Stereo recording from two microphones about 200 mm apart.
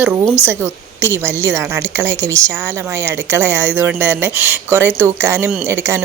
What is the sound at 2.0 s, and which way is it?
Speech, 65° right (ahead or behind).